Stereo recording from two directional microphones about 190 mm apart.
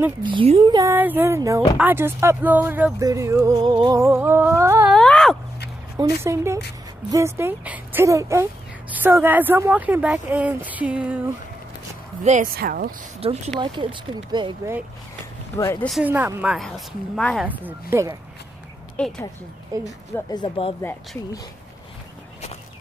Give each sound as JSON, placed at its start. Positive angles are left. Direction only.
{"t": 0.2, "sound": "speech", "side_deg": -25}
{"t": 4.8, "sound": "a sound", "side_deg": 5}
{"t": 5.9, "sound": "speech", "side_deg": -15}
{"t": 12.2, "sound": "speech", "side_deg": -45}
{"t": 13.2, "sound": "speech", "side_deg": -30}
{"t": 15.5, "sound": "speech", "side_deg": 15}
{"t": 15.9, "sound": "a woman's voice", "side_deg": -10}
{"t": 17.4, "sound": "speech", "side_deg": -10}
{"t": 18.9, "sound": "a woman's voice", "side_deg": 5}
{"t": 19.8, "sound": "speech", "side_deg": 20}